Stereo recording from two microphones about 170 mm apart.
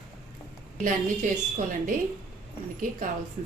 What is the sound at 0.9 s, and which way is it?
Speech, 45° right (ahead or behind).